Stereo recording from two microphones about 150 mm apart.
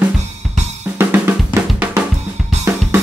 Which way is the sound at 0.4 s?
Centre (ahead or behind).